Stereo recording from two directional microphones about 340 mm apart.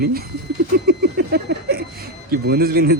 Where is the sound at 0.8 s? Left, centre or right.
Right.